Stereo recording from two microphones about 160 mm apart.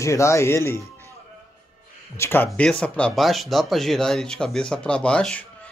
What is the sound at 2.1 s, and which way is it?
Speech, 15° left (ahead or behind).